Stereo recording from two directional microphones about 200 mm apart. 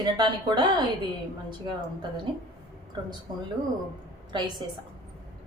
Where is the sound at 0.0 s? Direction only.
20° right (ahead or behind).